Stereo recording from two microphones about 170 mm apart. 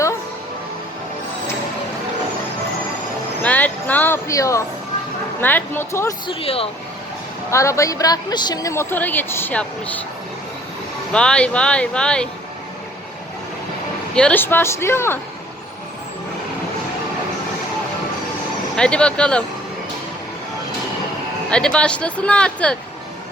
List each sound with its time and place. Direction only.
3.4 s a woman's voice: 10° left (ahead or behind)
6.2 s speech: 35° left (ahead or behind)
7.5 s a woman's voice: 15° left (ahead or behind)
11.1 s speech: 5° left (ahead or behind)
14.2 s a woman's voice: 10° left (ahead or behind)
18.8 s speech: 5° left (ahead or behind)
21.5 s a woman's voice: 5° left (ahead or behind)